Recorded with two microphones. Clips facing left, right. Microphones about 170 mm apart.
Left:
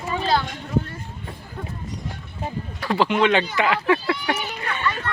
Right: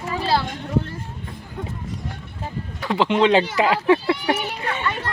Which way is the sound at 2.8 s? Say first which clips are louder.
Right 1 dB; 20° right (ahead or behind).